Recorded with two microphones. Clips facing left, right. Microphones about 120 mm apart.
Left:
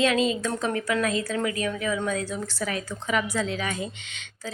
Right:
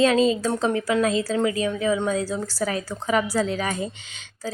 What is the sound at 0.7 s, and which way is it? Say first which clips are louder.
A woman's voice: right 3 dB; 25° right (ahead or behind).